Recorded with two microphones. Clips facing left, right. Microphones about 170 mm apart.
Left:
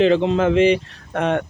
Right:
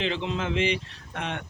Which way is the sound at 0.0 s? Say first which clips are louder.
Left 13 dB; 45° left (ahead or behind).